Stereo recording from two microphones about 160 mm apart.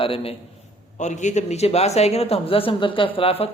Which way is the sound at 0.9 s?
50° left (ahead or behind).